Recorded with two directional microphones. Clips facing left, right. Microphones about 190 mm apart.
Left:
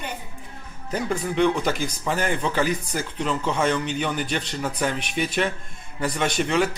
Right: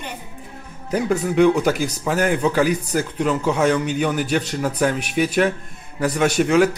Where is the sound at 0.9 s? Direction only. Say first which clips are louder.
Right 6 dB; 5° right (ahead or behind).